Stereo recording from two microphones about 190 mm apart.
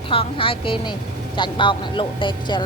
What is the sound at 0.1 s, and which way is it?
Speech, 30° left (ahead or behind).